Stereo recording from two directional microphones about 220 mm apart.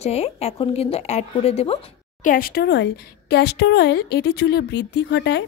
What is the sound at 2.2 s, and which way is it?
Speech, 40° left (ahead or behind).